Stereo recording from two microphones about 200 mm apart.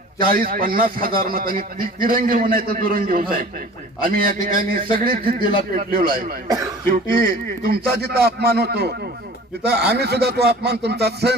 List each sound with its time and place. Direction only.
0.2 s a man's voice: 45° right (ahead or behind)
9.9 s speech: 55° right (ahead or behind)